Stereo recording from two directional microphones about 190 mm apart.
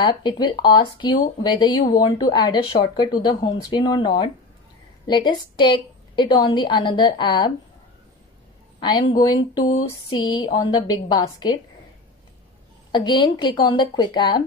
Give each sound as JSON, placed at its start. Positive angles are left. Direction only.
{"t": 0.0, "sound": "speech", "side_deg": 25}
{"t": 8.8, "sound": "speech", "side_deg": 20}
{"t": 12.9, "sound": "speech", "side_deg": 25}